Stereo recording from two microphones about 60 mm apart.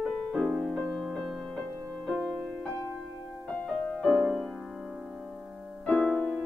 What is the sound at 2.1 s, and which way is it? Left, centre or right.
Music, centre.